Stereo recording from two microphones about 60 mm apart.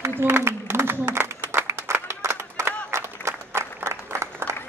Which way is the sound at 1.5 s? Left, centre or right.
Right.